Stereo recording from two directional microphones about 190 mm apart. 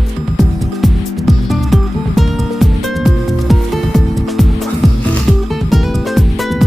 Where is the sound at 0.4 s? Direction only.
Centre (ahead or behind).